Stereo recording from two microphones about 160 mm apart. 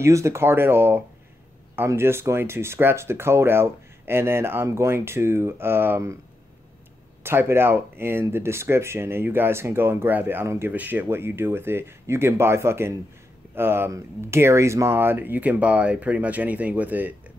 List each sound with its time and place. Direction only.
0.0 s speech: 20° right (ahead or behind)
7.2 s speech: 15° right (ahead or behind)